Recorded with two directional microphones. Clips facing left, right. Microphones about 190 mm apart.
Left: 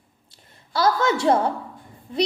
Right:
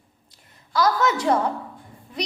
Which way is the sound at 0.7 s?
30° left (ahead or behind).